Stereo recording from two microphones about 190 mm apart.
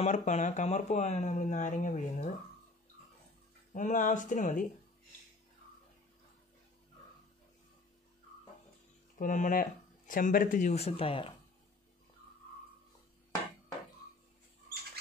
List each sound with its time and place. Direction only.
0.0 s speech: 40° left (ahead or behind)
3.7 s speech: 40° left (ahead or behind)
9.2 s speech: 45° left (ahead or behind)